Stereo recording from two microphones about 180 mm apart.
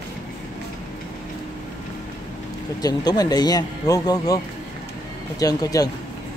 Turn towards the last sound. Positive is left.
turn(degrees=20)  # may be behind; listen again after turning